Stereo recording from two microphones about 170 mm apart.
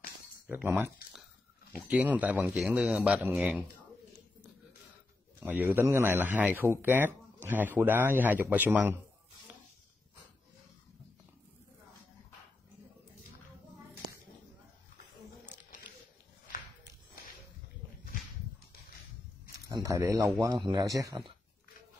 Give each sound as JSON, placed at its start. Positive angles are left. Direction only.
{"t": 0.5, "sound": "speech", "side_deg": -10}
{"t": 5.4, "sound": "speech", "side_deg": -10}
{"t": 19.7, "sound": "a man's voice", "side_deg": -20}